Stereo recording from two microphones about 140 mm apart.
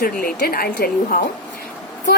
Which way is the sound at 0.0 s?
90° left.